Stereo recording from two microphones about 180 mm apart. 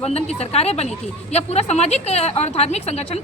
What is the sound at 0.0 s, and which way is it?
A woman's voice, 35° left (ahead or behind).